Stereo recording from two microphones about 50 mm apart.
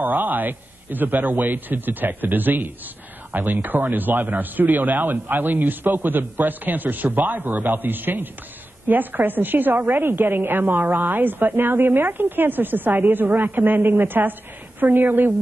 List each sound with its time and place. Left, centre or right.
0.0 s a woman's voice: right